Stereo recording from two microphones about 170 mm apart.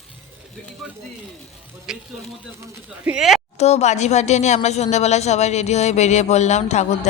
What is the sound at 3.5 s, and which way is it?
Speech, 40° left (ahead or behind).